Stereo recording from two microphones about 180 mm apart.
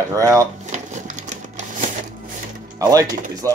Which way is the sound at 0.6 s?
40° right (ahead or behind).